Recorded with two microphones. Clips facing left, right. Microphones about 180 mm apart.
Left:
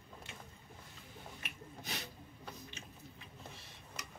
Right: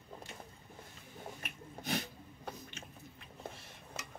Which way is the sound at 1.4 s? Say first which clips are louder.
Right 4 dB; 50° right (ahead or behind).